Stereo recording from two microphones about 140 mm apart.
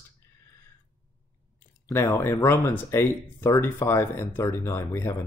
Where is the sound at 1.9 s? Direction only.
20° left (ahead or behind).